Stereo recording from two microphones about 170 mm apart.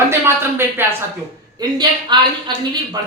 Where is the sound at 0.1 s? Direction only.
15° right (ahead or behind).